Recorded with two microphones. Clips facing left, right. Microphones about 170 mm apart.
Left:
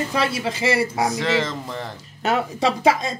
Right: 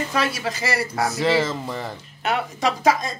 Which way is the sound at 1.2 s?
10° right (ahead or behind).